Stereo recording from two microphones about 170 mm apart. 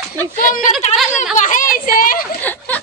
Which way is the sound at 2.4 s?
10° left (ahead or behind).